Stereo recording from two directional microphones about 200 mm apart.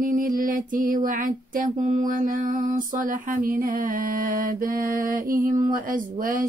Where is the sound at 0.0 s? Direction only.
40° right (ahead or behind).